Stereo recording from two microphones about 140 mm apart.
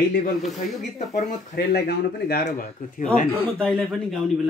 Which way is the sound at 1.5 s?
90° left.